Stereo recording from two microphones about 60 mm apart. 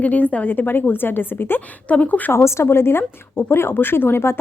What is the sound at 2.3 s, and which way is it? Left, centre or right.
Speech, left.